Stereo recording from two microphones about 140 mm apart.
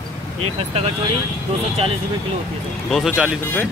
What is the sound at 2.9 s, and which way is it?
Speech, centre (ahead or behind).